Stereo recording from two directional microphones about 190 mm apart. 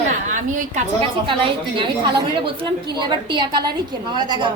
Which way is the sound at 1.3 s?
25° right (ahead or behind).